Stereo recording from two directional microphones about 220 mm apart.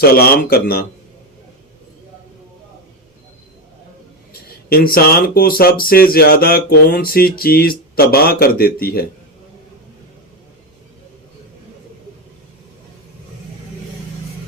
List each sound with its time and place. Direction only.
0.0 s speech: 45° left (ahead or behind)
4.3 s speech: 40° left (ahead or behind)